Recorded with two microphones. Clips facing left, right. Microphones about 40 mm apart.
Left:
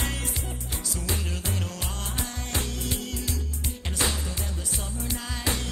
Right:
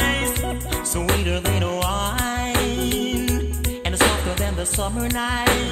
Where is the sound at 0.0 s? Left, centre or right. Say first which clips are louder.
Right 11 dB; right.